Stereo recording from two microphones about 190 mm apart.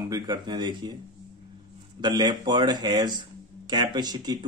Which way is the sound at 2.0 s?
20° right (ahead or behind).